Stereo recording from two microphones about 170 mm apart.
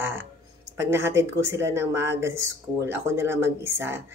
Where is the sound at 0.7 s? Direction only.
15° right (ahead or behind).